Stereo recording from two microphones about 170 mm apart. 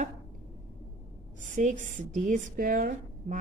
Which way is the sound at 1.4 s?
45° right (ahead or behind).